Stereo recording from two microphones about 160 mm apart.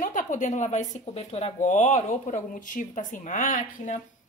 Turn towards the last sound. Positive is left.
turn(degrees=55)  # may be behind; listen again after turning